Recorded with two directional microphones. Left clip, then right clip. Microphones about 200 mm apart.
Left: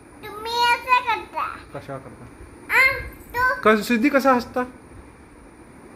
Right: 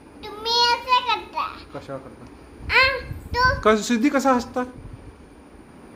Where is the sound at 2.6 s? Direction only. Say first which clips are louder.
Even; 25° right (ahead or behind).